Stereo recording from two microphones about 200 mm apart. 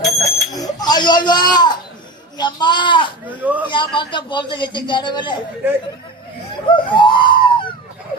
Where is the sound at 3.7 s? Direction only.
25° left (ahead or behind).